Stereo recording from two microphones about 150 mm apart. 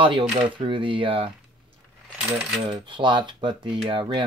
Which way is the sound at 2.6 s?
30° right (ahead or behind).